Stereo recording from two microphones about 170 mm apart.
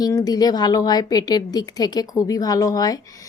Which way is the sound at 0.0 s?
20° left (ahead or behind).